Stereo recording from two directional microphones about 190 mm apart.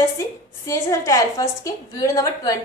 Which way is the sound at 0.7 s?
15° left (ahead or behind).